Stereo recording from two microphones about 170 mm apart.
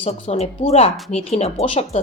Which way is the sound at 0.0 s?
40° left (ahead or behind).